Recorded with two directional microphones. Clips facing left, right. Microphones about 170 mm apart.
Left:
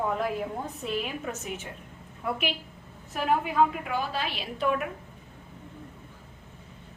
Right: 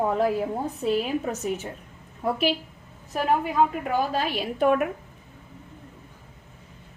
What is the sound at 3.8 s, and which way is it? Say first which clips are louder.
A woman's voice: right 6 dB; 45° right (ahead or behind).